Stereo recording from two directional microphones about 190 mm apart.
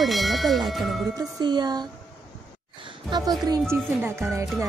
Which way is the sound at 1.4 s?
20° right (ahead or behind).